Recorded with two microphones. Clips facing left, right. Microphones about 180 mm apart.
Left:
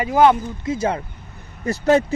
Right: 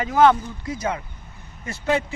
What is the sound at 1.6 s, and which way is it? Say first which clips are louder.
Speech: left 7 dB; 40° left (ahead or behind).